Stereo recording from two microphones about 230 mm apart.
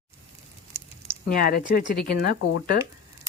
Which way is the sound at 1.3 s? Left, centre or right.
Left.